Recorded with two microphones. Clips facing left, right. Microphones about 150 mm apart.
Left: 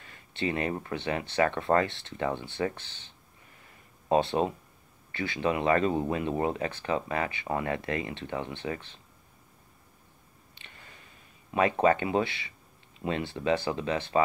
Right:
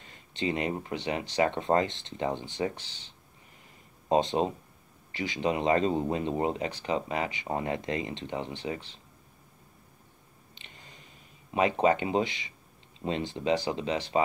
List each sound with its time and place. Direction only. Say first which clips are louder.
0.0 s speech: even; 25° right (ahead or behind)
4.1 s speech: even; 20° right (ahead or behind)
10.6 s a sound: even; 20° right (ahead or behind)
11.5 s speech: left 1 dB; 20° right (ahead or behind)